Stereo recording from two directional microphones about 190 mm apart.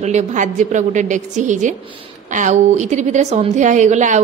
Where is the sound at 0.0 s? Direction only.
40° right (ahead or behind).